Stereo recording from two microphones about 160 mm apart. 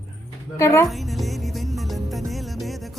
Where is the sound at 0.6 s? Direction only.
15° left (ahead or behind).